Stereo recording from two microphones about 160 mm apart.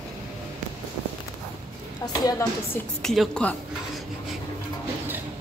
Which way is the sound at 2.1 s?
20° left (ahead or behind).